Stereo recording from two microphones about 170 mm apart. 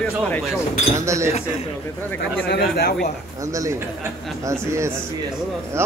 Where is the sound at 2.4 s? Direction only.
60° left (ahead or behind).